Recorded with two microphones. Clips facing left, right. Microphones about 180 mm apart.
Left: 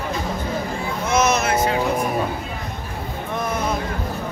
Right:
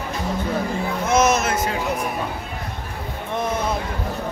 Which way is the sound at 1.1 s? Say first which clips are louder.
Right 1 dB; 50° right (ahead or behind).